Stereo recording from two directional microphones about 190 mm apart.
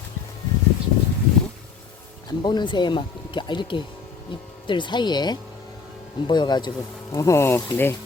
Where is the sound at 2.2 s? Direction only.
25° left (ahead or behind).